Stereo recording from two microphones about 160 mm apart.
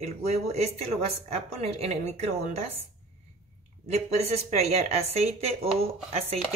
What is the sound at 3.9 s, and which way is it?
A woman's voice, 40° right (ahead or behind).